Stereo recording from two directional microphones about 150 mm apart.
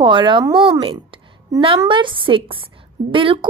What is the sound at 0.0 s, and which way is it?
A woman's voice, 35° right (ahead or behind).